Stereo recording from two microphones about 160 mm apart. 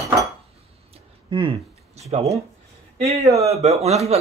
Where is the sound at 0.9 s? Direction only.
35° right (ahead or behind).